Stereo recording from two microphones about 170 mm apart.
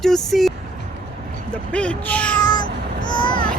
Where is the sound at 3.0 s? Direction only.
25° left (ahead or behind).